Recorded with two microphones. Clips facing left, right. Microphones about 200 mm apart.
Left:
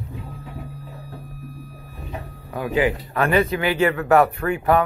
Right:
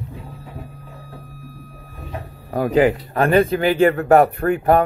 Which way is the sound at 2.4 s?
40° right (ahead or behind).